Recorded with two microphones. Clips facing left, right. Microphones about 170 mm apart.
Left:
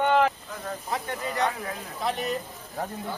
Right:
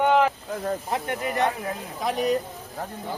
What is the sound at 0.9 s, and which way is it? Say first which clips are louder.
Speech: right 3 dB; 20° right (ahead or behind).